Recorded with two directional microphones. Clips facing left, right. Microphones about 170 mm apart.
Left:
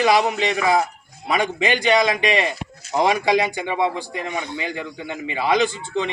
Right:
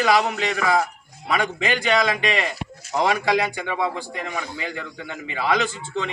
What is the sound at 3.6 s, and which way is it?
A man's voice, 20° left (ahead or behind).